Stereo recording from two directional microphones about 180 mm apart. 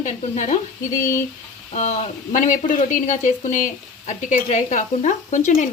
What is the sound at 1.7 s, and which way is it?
Speech, 40° left (ahead or behind).